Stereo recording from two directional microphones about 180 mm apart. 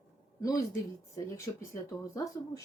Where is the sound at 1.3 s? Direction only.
15° left (ahead or behind).